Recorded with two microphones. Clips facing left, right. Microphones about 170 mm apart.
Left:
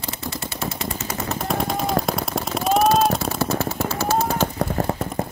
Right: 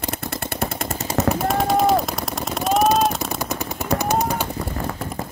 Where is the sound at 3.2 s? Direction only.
15° right (ahead or behind).